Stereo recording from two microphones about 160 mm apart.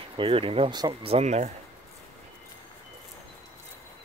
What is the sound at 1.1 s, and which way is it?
Speech, 45° right (ahead or behind).